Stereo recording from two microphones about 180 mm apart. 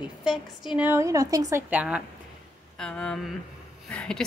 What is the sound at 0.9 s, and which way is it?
Speech, 15° right (ahead or behind).